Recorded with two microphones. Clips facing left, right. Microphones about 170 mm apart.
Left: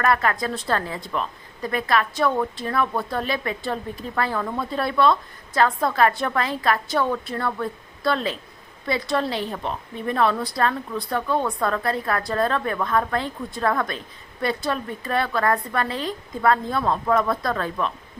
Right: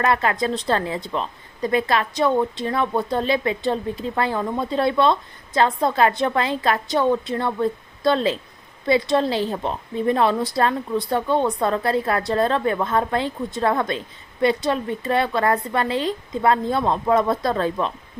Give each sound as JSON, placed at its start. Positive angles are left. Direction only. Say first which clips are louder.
{"t": 0.0, "sound": "a woman's voice", "louder": "right 1 dB", "side_deg": -25}